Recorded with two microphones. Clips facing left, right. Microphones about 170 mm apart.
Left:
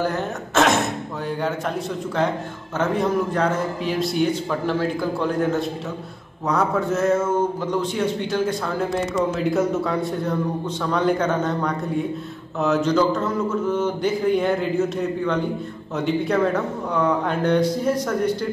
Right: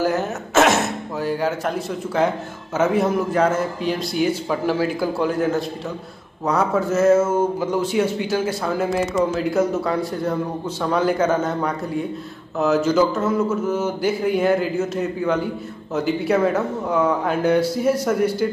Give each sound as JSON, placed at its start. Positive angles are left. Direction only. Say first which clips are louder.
{"t": 0.0, "sound": "speech", "louder": "right 3 dB", "side_deg": -5}
{"t": 2.8, "sound": "a man's voice", "louder": "right 2 dB", "side_deg": -5}